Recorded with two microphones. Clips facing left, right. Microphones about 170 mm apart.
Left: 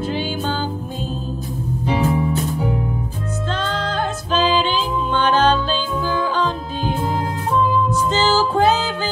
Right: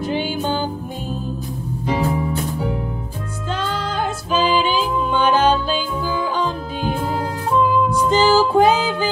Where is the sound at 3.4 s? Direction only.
10° right (ahead or behind).